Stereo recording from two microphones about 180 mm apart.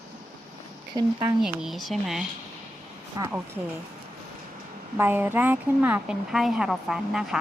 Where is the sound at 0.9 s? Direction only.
20° right (ahead or behind).